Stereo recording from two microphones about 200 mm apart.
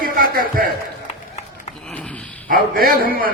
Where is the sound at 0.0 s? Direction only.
45° right (ahead or behind).